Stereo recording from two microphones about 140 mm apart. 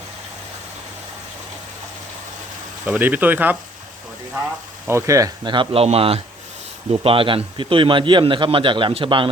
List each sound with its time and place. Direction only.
2.8 s speech: 10° right (ahead or behind)
4.9 s a man's voice: 20° right (ahead or behind); by 9.3 s 40° right (ahead or behind)